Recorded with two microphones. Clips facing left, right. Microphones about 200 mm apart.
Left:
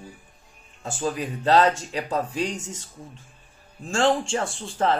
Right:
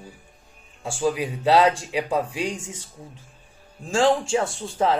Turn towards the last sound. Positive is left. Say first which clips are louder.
# right 1 dB
turn(degrees=-5)  # may be behind; listen again after turning